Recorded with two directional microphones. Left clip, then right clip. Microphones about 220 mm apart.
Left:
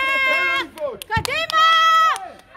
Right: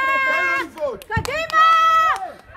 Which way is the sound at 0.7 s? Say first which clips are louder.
Right 2 dB; 35° right (ahead or behind).